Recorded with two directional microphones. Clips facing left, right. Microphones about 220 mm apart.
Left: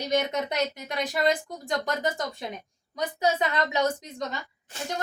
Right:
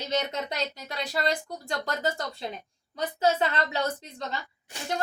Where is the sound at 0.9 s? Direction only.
20° left (ahead or behind).